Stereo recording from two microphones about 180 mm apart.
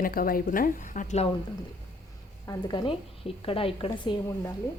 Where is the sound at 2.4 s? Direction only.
20° left (ahead or behind).